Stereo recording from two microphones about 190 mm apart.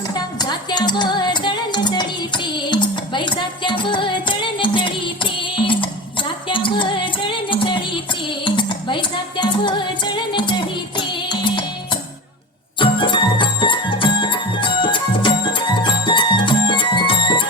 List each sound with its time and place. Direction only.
0.1 s music: 20° left (ahead or behind)
12.8 s music: 25° left (ahead or behind)